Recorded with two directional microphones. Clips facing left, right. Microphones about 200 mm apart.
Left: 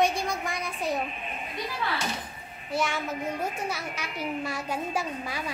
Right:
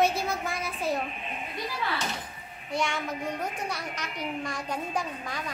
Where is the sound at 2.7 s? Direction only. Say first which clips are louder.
Left 1 dB; 5° left (ahead or behind).